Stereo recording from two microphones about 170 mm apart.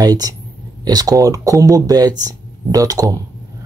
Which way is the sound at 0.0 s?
20° right (ahead or behind).